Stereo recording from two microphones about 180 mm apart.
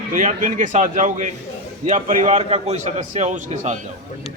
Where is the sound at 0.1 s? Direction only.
45° right (ahead or behind).